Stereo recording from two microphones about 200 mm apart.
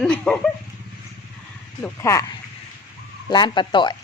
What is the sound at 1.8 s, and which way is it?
Speech, 15° left (ahead or behind).